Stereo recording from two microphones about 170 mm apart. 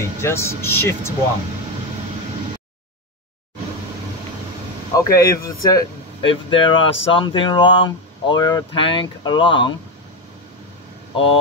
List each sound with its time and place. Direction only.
0.2 s speech: 15° left (ahead or behind)
4.9 s speech: 20° left (ahead or behind)
6.2 s speech: 30° left (ahead or behind)